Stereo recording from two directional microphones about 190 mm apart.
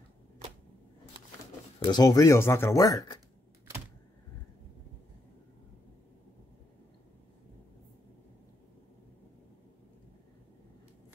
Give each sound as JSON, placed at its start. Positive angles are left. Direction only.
{"t": 1.8, "sound": "speech", "side_deg": 20}